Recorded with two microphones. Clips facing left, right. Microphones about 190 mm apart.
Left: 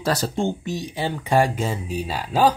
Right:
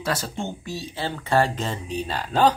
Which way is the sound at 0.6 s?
15° left (ahead or behind).